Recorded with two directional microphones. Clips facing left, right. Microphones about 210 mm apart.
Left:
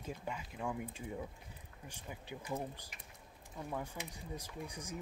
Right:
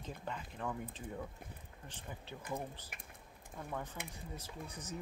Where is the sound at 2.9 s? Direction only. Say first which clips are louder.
Right 2 dB; 55° right (ahead or behind).